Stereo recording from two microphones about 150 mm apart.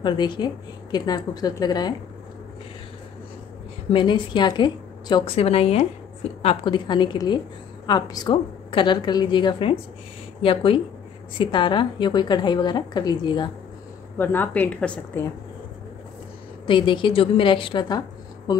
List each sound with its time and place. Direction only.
0.0 s a woman's voice: 30° left (ahead or behind)
3.9 s a woman's voice: 30° left (ahead or behind)
6.4 s a woman's voice: 30° left (ahead or behind)
14.1 s a woman's voice: 10° left (ahead or behind)
16.6 s a woman's voice: 30° left (ahead or behind)